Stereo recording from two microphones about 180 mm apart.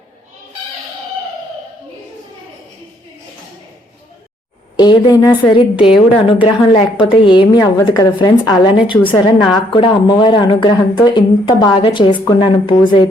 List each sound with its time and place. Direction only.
4.8 s a woman's voice: 25° left (ahead or behind)